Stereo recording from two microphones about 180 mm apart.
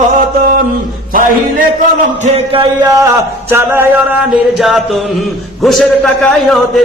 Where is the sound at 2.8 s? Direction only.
20° right (ahead or behind).